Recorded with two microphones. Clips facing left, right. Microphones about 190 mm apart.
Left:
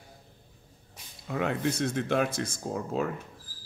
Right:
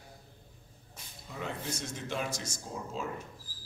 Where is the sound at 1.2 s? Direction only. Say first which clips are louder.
Left 10 dB; 70° left (ahead or behind).